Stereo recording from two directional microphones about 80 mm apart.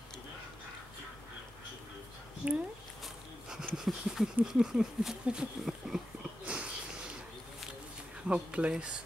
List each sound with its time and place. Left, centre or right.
2.4 s speech: centre
3.0 s a sound: centre
8.3 s speech: centre